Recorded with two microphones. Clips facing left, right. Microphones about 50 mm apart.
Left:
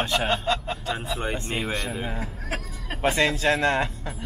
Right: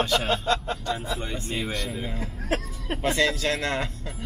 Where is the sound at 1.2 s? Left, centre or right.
Left.